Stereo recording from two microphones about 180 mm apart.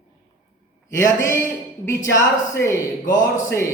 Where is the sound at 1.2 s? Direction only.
15° left (ahead or behind).